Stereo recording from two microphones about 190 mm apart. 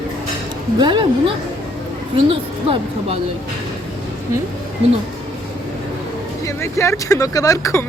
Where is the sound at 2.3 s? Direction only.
30° right (ahead or behind).